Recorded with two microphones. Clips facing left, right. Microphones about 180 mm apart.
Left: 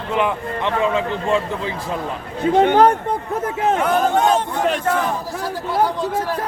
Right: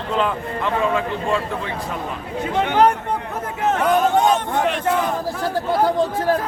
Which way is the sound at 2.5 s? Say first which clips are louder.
Left 6 dB; 50° left (ahead or behind).